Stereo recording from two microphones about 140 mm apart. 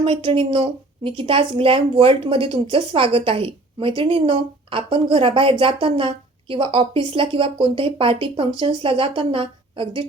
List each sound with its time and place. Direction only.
0.0 s a woman's voice: 35° right (ahead or behind)